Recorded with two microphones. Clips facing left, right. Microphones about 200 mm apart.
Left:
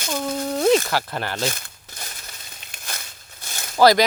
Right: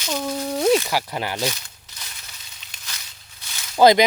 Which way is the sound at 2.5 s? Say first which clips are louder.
Left 7 dB; 50° left (ahead or behind).